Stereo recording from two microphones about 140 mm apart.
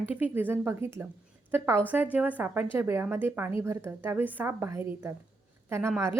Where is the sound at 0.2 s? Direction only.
15° right (ahead or behind).